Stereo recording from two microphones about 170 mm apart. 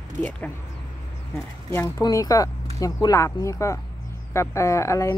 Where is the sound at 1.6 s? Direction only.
15° left (ahead or behind).